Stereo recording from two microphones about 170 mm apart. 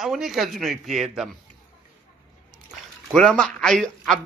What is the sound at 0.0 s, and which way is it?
Speech, centre (ahead or behind).